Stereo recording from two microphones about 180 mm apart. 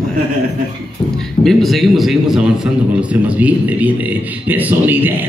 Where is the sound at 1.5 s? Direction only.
Centre (ahead or behind).